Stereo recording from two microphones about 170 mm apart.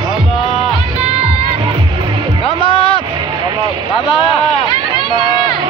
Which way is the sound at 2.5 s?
30° left (ahead or behind).